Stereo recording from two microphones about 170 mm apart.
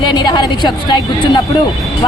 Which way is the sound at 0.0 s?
25° left (ahead or behind).